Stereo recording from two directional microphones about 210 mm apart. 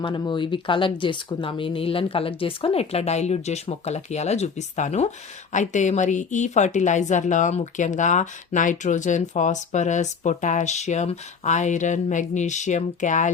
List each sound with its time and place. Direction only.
0.0 s a woman's voice: 20° left (ahead or behind)